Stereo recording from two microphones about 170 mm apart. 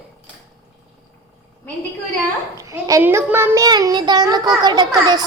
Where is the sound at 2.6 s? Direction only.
20° right (ahead or behind).